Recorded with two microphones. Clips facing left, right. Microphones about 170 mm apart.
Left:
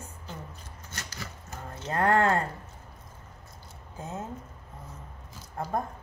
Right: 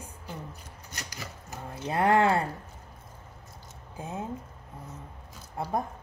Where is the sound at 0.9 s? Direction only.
15° right (ahead or behind).